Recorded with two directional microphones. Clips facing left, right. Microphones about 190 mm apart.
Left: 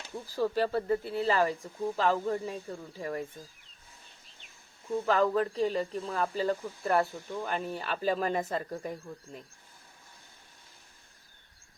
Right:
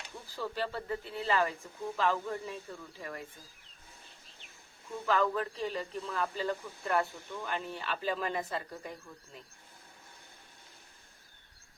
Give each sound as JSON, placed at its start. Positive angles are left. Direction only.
{"t": 0.3, "sound": "speech", "side_deg": 40}
{"t": 5.0, "sound": "speech", "side_deg": 35}